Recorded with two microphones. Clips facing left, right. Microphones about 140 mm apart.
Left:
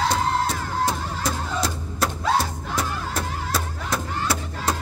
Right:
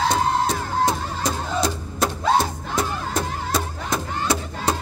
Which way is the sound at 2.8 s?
5° left (ahead or behind).